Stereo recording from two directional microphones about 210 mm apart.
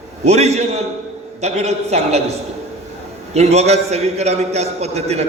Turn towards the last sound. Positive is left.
turn(degrees=-30)  # may be behind; listen again after turning